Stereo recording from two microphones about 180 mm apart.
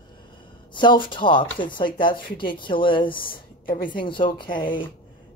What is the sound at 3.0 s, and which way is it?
Speech, 50° left (ahead or behind).